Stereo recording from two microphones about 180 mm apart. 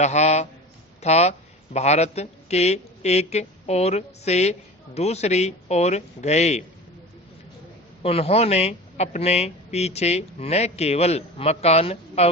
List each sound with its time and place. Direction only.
0.0 s a man's voice: 40° left (ahead or behind)
8.0 s speech: 35° left (ahead or behind)